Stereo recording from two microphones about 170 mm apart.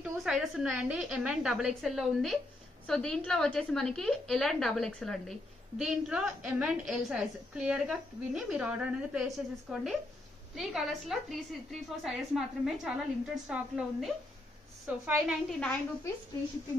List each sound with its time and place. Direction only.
0.0 s a woman's voice: centre (ahead or behind)